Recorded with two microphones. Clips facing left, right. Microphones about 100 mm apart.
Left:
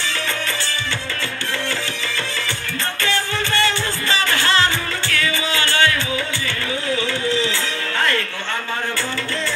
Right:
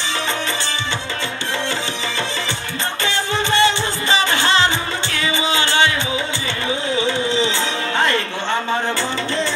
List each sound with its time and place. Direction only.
3.0 s music: 20° right (ahead or behind)